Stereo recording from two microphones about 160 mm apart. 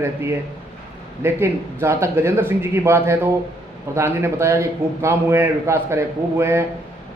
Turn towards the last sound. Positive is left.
turn(degrees=-15)  # may be behind; listen again after turning